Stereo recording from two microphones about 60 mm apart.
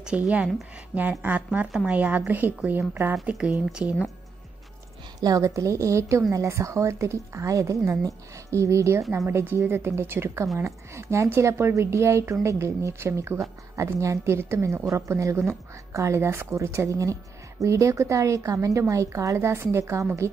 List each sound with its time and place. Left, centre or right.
0.0 s a woman's voice: centre
1.2 s a woman's voice: right
3.3 s a woman's voice: centre
5.2 s a woman's voice: right
10.6 s a woman's voice: right